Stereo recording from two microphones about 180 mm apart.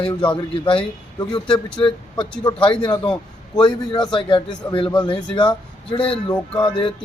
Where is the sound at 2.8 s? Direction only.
25° left (ahead or behind).